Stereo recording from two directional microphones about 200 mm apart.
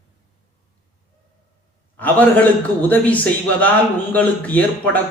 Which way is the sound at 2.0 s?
10° left (ahead or behind).